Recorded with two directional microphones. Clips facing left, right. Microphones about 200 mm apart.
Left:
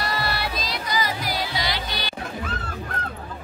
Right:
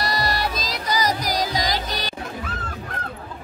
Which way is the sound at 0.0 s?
40° right (ahead or behind).